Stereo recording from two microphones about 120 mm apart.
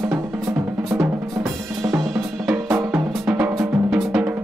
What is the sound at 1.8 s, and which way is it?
Drum kit, 25° right (ahead or behind).